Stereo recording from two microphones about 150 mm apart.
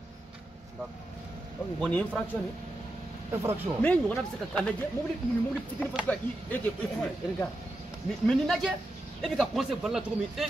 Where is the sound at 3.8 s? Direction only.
10° left (ahead or behind).